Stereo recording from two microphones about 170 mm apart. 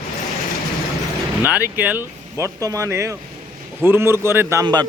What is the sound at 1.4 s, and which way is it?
A man's voice, 10° right (ahead or behind).